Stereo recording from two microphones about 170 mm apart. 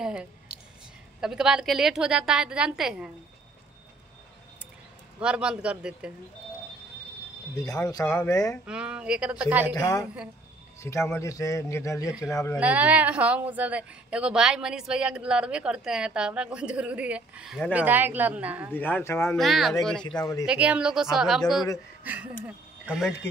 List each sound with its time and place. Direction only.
0.0 s a woman's voice: 5° right (ahead or behind)
5.2 s a woman's voice: 5° right (ahead or behind)
7.5 s speech: 20° left (ahead or behind)
8.6 s a woman's voice: 5° right (ahead or behind)
9.8 s speech: 20° left (ahead or behind)
12.1 s a woman's voice: centre (ahead or behind)
17.8 s a woman's voice: 10° right (ahead or behind)
18.7 s speech: 10° left (ahead or behind)
19.3 s a woman's voice: centre (ahead or behind)
20.4 s a woman's voice: 10° right (ahead or behind)